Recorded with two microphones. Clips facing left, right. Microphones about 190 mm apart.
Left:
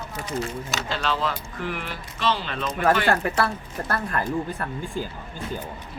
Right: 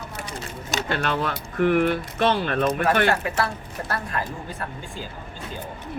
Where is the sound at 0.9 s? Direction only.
60° right (ahead or behind).